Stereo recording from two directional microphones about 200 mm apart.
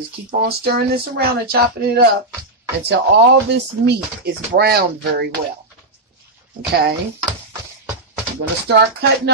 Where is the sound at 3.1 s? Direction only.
60° right (ahead or behind).